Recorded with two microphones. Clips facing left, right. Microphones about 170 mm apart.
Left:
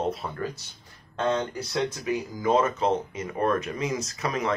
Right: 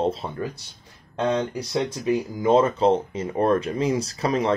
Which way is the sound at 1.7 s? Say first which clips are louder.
Right 4 dB; 25° right (ahead or behind).